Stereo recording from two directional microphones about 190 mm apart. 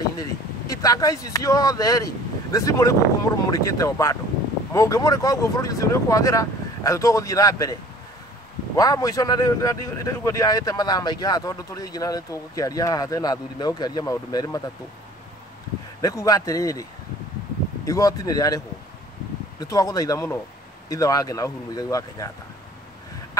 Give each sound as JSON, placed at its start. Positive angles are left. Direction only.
{"t": 0.2, "sound": "a man's voice", "side_deg": 20}
{"t": 8.7, "sound": "a man's voice", "side_deg": 20}
{"t": 16.0, "sound": "speech", "side_deg": 15}
{"t": 17.8, "sound": "speech", "side_deg": 15}
{"t": 19.6, "sound": "a man's voice", "side_deg": 20}